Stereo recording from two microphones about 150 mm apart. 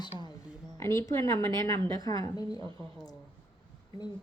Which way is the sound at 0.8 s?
20° left (ahead or behind).